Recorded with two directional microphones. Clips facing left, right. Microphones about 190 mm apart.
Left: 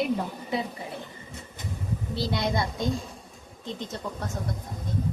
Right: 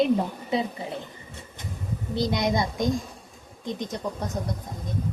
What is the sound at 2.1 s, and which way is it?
Speech, 15° right (ahead or behind).